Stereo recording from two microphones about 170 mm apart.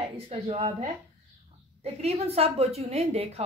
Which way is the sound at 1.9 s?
40° right (ahead or behind).